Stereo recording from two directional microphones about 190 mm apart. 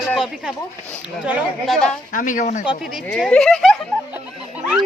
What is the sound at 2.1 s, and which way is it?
Speech, 40° left (ahead or behind).